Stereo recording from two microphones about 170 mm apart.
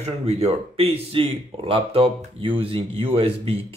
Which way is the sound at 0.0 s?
35° right (ahead or behind).